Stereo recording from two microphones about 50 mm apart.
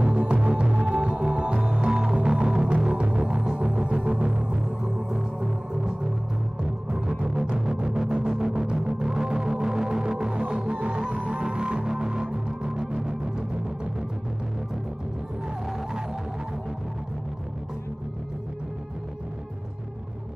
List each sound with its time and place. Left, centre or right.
0.0 s music: right